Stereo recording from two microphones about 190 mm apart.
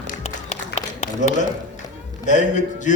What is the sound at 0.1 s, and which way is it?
Run, 40° left (ahead or behind).